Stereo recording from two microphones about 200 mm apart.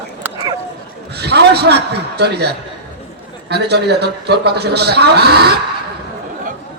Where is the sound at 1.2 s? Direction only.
55° right (ahead or behind).